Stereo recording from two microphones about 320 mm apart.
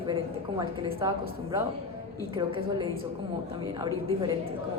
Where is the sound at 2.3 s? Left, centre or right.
Centre.